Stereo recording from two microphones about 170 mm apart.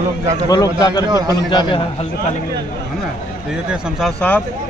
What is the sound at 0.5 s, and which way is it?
Speech, 25° left (ahead or behind).